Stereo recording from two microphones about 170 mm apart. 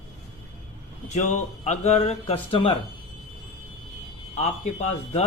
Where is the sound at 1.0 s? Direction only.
45° left (ahead or behind).